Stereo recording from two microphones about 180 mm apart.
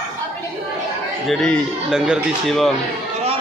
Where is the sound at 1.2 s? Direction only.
5° left (ahead or behind).